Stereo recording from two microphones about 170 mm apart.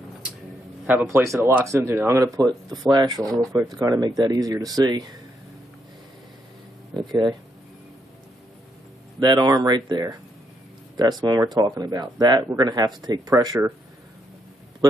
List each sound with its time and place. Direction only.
0.8 s speech: 10° right (ahead or behind)
7.1 s speech: 25° right (ahead or behind)
9.2 s speech: 25° right (ahead or behind)